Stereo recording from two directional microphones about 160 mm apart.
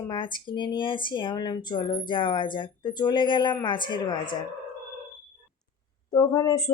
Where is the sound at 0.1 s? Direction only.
30° left (ahead or behind).